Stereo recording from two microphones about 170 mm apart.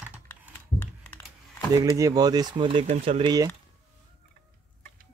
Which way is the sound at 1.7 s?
20° right (ahead or behind).